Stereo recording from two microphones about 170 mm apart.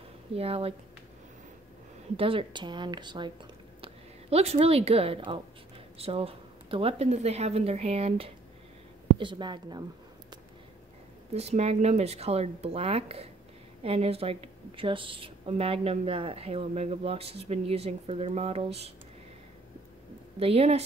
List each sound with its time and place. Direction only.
0.3 s speech: 35° right (ahead or behind)
2.1 s speech: 30° right (ahead or behind)
3.8 s a woman's voice: 35° right (ahead or behind)
9.2 s speech: 25° right (ahead or behind)
11.3 s speech: 40° right (ahead or behind)
20.3 s speech: 35° right (ahead or behind)